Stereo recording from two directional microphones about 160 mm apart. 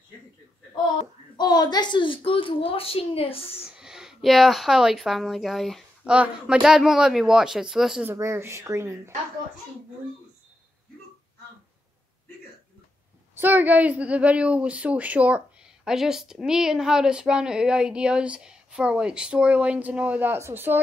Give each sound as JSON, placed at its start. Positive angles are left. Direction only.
{"t": 0.9, "sound": "a woman's voice", "side_deg": 25}
{"t": 3.7, "sound": "speech", "side_deg": -5}
{"t": 8.1, "sound": "speech", "side_deg": -15}
{"t": 13.3, "sound": "speech", "side_deg": -10}